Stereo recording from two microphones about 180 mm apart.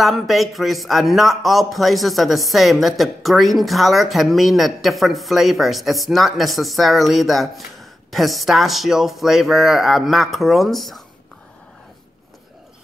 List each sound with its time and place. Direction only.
0.0 s a man's voice: centre (ahead or behind)